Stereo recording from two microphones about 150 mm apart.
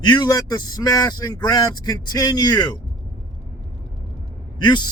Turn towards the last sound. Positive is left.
turn(degrees=30)  # may be behind; listen again after turning